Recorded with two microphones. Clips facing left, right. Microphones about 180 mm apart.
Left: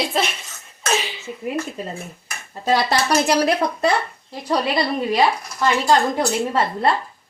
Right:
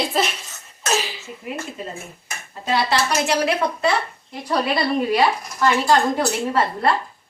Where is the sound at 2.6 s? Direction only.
40° left (ahead or behind).